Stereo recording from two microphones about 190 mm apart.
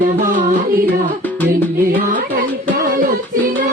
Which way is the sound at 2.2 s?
55° right (ahead or behind).